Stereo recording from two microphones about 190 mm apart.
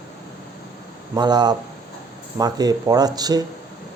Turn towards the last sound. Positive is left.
turn(degrees=-20)  # may be behind; listen again after turning